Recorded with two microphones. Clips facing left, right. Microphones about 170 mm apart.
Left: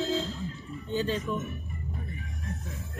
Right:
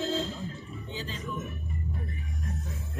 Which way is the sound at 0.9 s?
60° left (ahead or behind).